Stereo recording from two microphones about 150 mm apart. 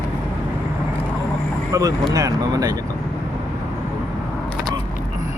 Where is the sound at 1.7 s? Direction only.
20° right (ahead or behind).